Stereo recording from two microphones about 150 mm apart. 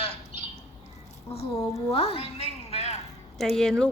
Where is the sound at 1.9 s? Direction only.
45° left (ahead or behind).